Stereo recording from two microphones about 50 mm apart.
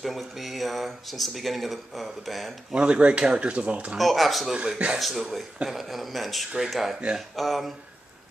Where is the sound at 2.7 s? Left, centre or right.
Right.